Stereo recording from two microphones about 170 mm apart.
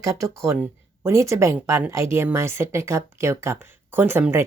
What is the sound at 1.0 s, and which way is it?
A woman's voice, 15° right (ahead or behind).